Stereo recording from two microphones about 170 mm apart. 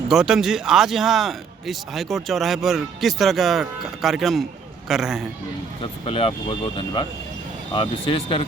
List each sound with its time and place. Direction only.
0.1 s a man's voice: 5° right (ahead or behind)
5.8 s speech: 30° left (ahead or behind)